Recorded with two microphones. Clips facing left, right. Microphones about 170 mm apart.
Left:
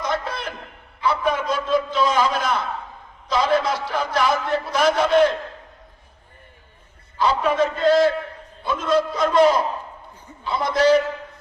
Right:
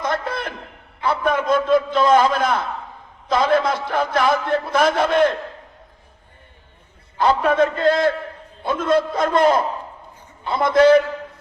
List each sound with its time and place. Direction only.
0.0 s a sound: 55° right (ahead or behind)
3.2 s a man's voice: 55° right (ahead or behind)
7.2 s a man's voice: 55° right (ahead or behind)